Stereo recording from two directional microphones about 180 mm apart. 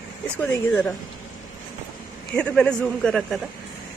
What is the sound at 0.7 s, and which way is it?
Speech, centre (ahead or behind).